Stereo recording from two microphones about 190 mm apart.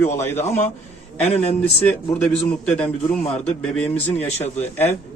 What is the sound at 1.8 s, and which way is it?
A man's voice, 5° left (ahead or behind).